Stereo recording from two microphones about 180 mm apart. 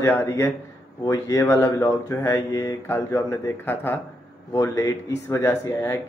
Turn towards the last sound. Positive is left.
turn(degrees=15)  # may be behind; listen again after turning